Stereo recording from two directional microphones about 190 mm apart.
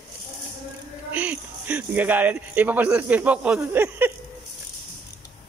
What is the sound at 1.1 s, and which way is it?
Speech, 10° right (ahead or behind).